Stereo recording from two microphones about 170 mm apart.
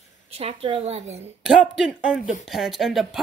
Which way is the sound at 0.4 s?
35° right (ahead or behind).